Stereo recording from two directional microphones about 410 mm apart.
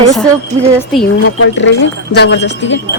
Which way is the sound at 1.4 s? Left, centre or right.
Left.